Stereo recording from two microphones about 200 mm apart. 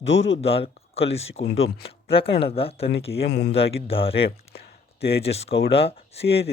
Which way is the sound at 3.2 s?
50° left (ahead or behind).